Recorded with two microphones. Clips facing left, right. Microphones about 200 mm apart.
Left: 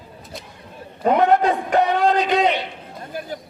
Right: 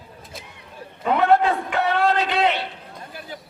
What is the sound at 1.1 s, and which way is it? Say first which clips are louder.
Speech: left 1 dB; 15° left (ahead or behind).